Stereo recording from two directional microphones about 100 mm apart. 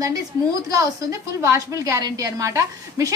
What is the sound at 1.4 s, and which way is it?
A woman's voice, 30° right (ahead or behind).